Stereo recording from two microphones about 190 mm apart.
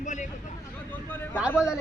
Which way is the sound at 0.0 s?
40° left (ahead or behind).